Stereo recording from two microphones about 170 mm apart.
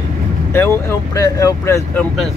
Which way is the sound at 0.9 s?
20° left (ahead or behind).